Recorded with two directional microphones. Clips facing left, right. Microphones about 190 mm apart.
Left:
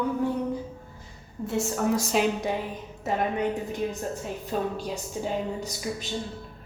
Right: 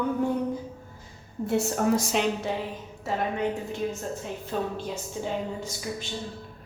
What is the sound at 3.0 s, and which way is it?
A woman's voice, 20° left (ahead or behind).